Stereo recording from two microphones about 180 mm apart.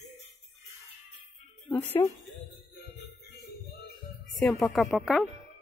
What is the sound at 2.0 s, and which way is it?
Speech, 20° left (ahead or behind).